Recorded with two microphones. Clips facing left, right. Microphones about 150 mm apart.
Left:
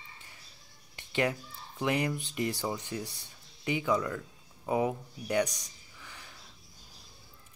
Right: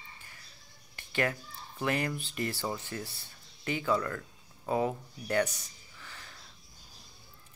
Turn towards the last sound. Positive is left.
turn(degrees=15)  # may be behind; listen again after turning